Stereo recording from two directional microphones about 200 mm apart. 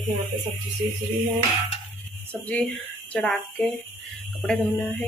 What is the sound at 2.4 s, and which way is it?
Speech, centre (ahead or behind).